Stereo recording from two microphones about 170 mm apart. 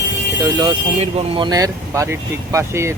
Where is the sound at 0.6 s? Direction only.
30° right (ahead or behind).